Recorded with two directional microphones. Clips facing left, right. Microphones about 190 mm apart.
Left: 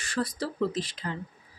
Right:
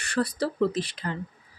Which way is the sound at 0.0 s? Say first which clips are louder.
Right 4 dB; 65° right (ahead or behind).